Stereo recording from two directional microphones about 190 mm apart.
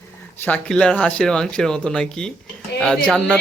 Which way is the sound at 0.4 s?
5° left (ahead or behind).